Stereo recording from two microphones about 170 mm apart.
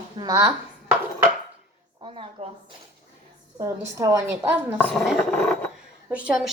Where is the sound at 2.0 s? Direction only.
35° right (ahead or behind).